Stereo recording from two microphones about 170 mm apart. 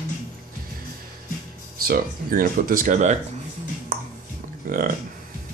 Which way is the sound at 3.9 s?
55° right (ahead or behind).